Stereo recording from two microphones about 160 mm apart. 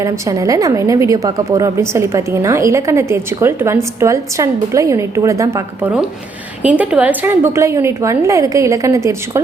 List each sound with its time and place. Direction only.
0.0 s a woman's voice: 20° right (ahead or behind)